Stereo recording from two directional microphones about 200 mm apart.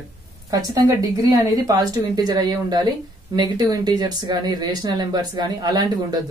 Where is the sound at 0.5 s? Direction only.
20° right (ahead or behind).